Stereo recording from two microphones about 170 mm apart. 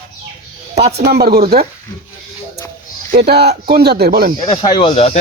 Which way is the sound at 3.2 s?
70° right (ahead or behind).